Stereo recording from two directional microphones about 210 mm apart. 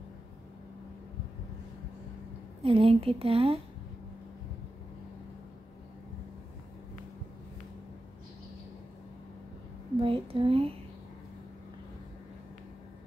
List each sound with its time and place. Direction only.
2.6 s a woman's voice: 25° right (ahead or behind)
9.9 s a woman's voice: 25° right (ahead or behind)